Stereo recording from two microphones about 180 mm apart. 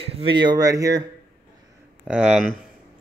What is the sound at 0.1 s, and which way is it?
Speech, 30° right (ahead or behind).